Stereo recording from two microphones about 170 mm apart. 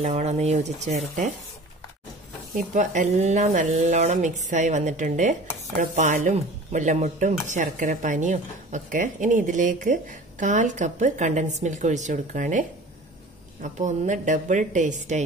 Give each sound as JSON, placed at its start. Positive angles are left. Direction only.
{"t": 0.0, "sound": "speech", "side_deg": -40}
{"t": 2.7, "sound": "speech", "side_deg": -45}